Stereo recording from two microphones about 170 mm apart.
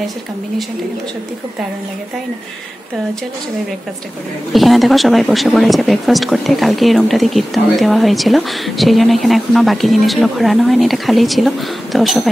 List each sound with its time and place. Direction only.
4.5 s speech: centre (ahead or behind)